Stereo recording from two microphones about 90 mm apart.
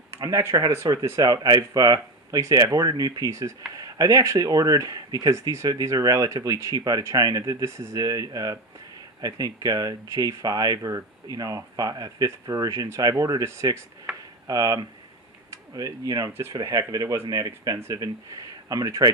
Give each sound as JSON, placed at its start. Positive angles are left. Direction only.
{"t": 0.1, "sound": "speech", "side_deg": -35}
{"t": 5.6, "sound": "speech", "side_deg": -45}
{"t": 14.1, "sound": "a sound", "side_deg": 0}
{"t": 14.4, "sound": "speech", "side_deg": -40}